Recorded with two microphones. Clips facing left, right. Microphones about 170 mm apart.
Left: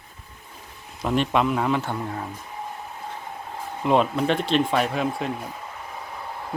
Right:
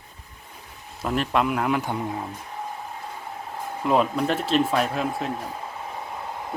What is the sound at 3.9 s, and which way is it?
Speech, centre (ahead or behind).